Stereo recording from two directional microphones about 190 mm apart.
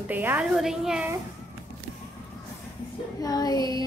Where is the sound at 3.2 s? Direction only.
20° left (ahead or behind).